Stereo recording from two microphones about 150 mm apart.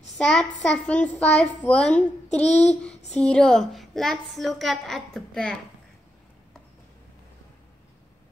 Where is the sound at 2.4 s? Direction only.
45° left (ahead or behind).